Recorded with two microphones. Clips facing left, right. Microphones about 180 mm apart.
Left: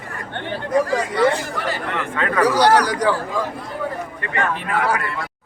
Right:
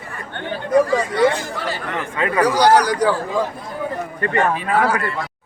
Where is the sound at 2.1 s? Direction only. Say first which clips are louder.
Right 1 dB; 10° right (ahead or behind).